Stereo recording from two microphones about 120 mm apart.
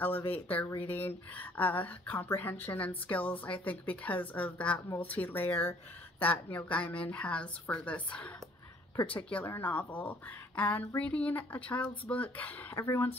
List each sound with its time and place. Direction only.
0.0 s a woman's voice: 15° left (ahead or behind)